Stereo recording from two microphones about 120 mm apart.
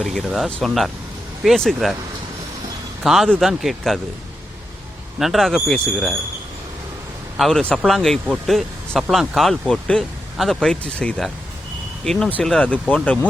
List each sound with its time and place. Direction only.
0.0 s speech: centre (ahead or behind)
3.0 s a man's voice: centre (ahead or behind)
5.2 s speech: centre (ahead or behind)
7.3 s speech: 5° left (ahead or behind)
12.4 s speech: 5° left (ahead or behind)